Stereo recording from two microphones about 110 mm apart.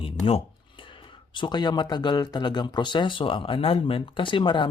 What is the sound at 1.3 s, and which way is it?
Speech, 45° left (ahead or behind).